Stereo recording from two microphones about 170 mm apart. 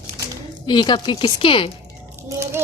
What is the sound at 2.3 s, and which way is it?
Speech, 15° right (ahead or behind).